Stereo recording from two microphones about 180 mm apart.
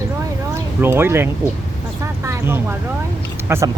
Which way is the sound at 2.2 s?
10° right (ahead or behind).